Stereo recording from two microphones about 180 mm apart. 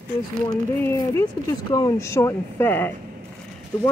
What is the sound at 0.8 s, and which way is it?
Speech, 15° left (ahead or behind).